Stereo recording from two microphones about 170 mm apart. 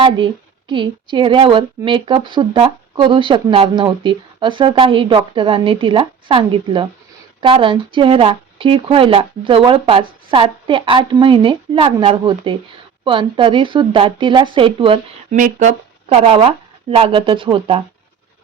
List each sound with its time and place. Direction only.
0.7 s a woman's voice: 30° right (ahead or behind)
15.4 s speech: 50° right (ahead or behind); by 17.8 s 30° right (ahead or behind)